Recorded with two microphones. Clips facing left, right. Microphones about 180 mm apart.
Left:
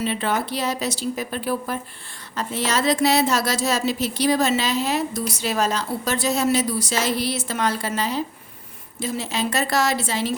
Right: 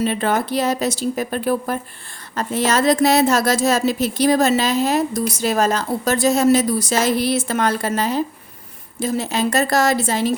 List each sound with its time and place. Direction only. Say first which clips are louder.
0.0 s a woman's voice: right 4 dB; 45° right (ahead or behind)